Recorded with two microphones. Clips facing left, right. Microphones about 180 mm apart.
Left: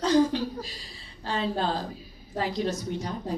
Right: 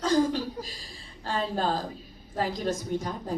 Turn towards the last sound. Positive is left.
turn(degrees=-45)  # may be behind; listen again after turning